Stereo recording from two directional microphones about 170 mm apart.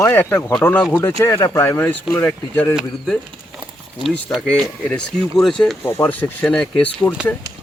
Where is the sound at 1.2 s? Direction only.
20° left (ahead or behind).